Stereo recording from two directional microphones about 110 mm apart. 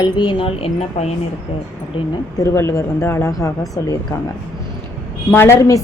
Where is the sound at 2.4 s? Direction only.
25° left (ahead or behind).